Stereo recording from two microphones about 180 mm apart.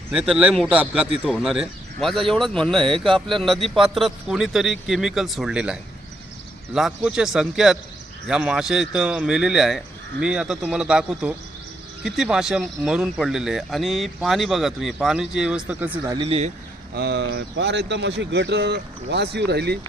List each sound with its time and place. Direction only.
0.1 s a man's voice: 5° right (ahead or behind)
16.1 s speech: 30° right (ahead or behind)
16.9 s speech: 65° right (ahead or behind)